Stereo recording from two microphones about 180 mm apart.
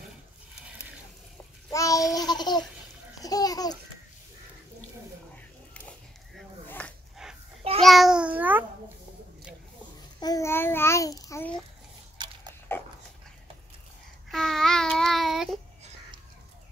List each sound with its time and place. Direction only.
1.7 s babbling: 20° left (ahead or behind)
5.9 s a sound: 5° left (ahead or behind)
7.8 s babbling: centre (ahead or behind)
10.2 s a child's voice: 15° left (ahead or behind)
12.2 s a sound: 25° right (ahead or behind)
12.7 s dog: 10° left (ahead or behind)
14.3 s child singing: centre (ahead or behind)